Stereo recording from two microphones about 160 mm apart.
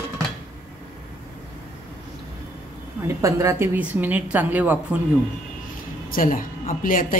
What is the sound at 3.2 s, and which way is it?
A woman's voice, 20° right (ahead or behind).